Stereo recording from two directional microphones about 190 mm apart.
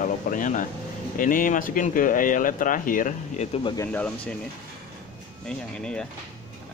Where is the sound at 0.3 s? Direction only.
45° left (ahead or behind).